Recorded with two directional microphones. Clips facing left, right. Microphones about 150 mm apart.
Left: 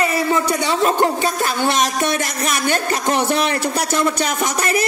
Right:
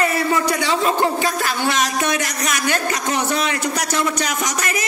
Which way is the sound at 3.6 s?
30° left (ahead or behind).